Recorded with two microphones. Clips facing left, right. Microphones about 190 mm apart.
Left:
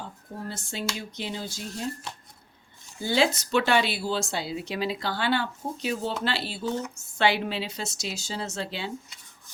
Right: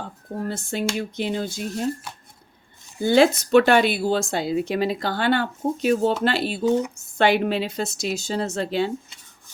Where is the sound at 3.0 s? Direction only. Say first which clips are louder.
Right 8 dB; 50° right (ahead or behind).